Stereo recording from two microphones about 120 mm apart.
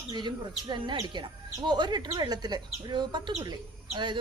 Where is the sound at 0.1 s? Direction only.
40° right (ahead or behind).